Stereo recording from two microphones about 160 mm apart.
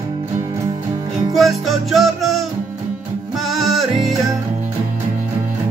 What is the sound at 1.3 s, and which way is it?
Music, centre (ahead or behind).